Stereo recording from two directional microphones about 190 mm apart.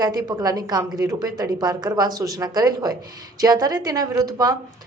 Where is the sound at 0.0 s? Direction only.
20° right (ahead or behind).